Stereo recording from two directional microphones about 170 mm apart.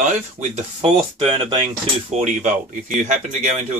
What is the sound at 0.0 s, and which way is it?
Speech, 45° right (ahead or behind).